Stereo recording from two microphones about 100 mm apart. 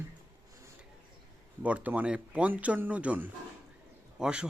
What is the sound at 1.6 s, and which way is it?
Speech, 15° right (ahead or behind).